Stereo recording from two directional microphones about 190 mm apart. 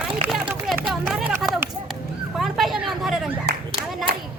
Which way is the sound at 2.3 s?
Centre (ahead or behind).